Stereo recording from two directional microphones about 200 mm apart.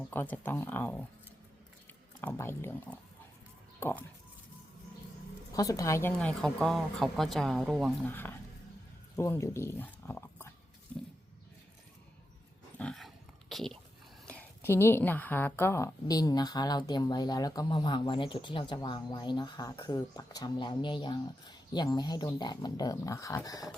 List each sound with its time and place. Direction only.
0.1 s speech: 10° left (ahead or behind)
5.5 s speech: 15° left (ahead or behind); by 7.9 s 5° right (ahead or behind)
8.0 s speech: 10° left (ahead or behind)
12.8 s dog: centre (ahead or behind)
13.5 s a woman's voice: centre (ahead or behind); by 23.7 s 15° left (ahead or behind)